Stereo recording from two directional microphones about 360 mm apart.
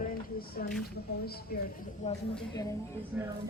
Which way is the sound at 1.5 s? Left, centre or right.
Left.